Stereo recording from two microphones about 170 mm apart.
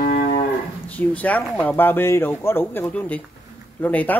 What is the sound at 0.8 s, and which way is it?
Speech, 10° left (ahead or behind).